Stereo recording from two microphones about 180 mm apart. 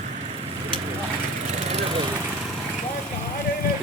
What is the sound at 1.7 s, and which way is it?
Vehicle, 35° right (ahead or behind).